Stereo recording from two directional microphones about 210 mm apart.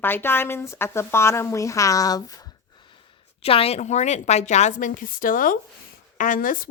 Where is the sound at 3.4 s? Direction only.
25° left (ahead or behind).